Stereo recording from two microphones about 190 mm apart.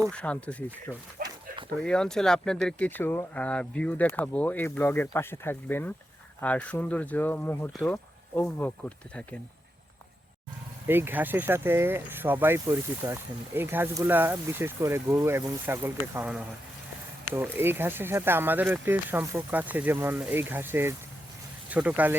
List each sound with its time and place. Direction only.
0.1 s speech: 5° left (ahead or behind)
1.2 s dog: 50° right (ahead or behind)
1.8 s speech: 5° left (ahead or behind)
10.8 s speech: 10° right (ahead or behind)